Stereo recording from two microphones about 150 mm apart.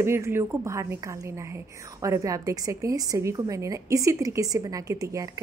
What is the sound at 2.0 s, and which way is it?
A woman's voice, 20° right (ahead or behind).